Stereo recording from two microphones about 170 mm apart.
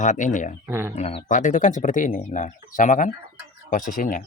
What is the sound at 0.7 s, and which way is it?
Speech, 15° right (ahead or behind).